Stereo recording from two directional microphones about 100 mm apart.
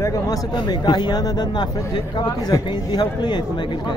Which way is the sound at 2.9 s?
45° left (ahead or behind).